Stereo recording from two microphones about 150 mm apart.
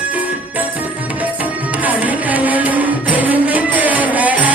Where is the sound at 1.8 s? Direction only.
10° right (ahead or behind).